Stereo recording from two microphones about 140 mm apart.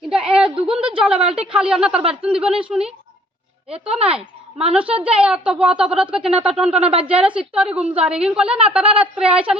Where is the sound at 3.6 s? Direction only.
45° right (ahead or behind).